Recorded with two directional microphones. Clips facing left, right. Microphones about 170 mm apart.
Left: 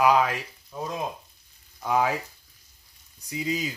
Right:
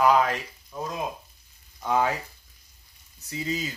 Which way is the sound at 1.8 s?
5° left (ahead or behind).